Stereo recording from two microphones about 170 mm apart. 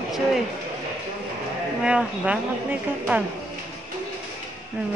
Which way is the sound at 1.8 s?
5° right (ahead or behind).